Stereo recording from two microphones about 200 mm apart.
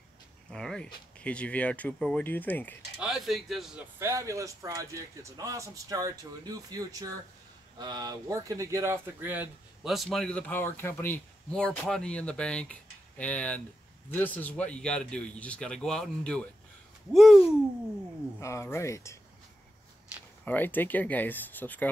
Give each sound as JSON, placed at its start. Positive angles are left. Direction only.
{"t": 0.5, "sound": "speech", "side_deg": 5}
{"t": 3.0, "sound": "speech", "side_deg": 0}
{"t": 4.0, "sound": "a man's voice", "side_deg": -15}
{"t": 18.4, "sound": "speech", "side_deg": 15}
{"t": 20.4, "sound": "speech", "side_deg": 10}